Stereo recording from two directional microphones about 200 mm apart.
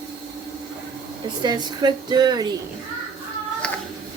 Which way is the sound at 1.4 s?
20° right (ahead or behind).